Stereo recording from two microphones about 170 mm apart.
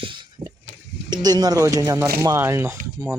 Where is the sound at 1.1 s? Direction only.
25° right (ahead or behind).